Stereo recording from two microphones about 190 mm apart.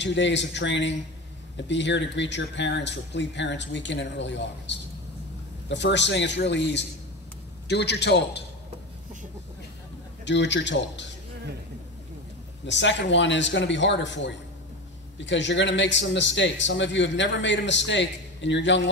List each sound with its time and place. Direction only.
0.0 s a man's voice: 70° left (ahead or behind)
10.2 s a man's voice: 70° left (ahead or behind)
12.6 s a man's voice: 70° left (ahead or behind)